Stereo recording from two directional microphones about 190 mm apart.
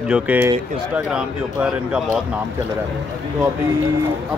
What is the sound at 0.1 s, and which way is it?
Speech, 10° right (ahead or behind).